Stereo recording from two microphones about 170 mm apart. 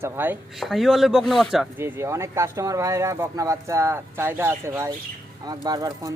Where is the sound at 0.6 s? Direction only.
Centre (ahead or behind).